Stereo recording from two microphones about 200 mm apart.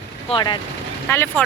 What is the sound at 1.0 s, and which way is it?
Speech, 10° left (ahead or behind).